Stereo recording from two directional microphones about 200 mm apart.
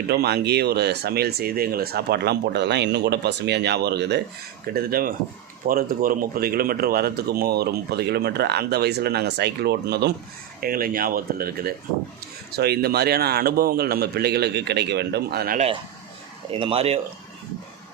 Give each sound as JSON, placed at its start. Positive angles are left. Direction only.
{"t": 0.1, "sound": "speech", "side_deg": -55}
{"t": 15.5, "sound": "speech", "side_deg": -30}